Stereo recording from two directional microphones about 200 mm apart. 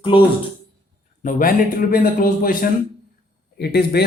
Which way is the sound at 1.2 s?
40° left (ahead or behind).